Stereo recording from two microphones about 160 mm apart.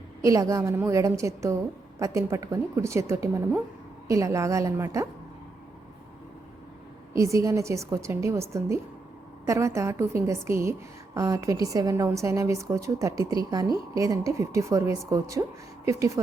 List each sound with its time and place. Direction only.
0.2 s a woman's voice: 20° right (ahead or behind)
7.1 s a woman's voice: 20° right (ahead or behind)